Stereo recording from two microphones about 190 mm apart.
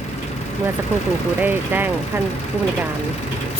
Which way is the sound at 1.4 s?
10° right (ahead or behind).